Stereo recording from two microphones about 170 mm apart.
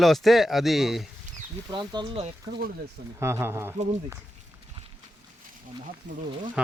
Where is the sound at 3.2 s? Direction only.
15° right (ahead or behind).